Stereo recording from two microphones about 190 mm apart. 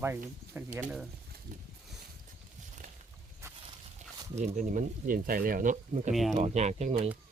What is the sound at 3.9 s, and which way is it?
Speech, 40° right (ahead or behind).